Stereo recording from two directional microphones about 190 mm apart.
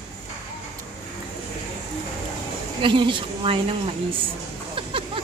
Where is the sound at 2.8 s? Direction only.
25° right (ahead or behind).